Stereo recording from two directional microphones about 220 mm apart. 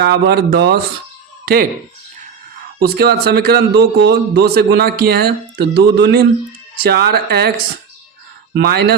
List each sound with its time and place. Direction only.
0.0 s speech: 45° right (ahead or behind)
2.7 s speech: 45° right (ahead or behind)